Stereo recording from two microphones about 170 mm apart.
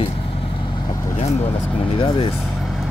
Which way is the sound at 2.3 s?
Centre (ahead or behind).